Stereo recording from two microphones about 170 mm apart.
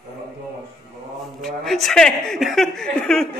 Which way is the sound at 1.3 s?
Centre (ahead or behind).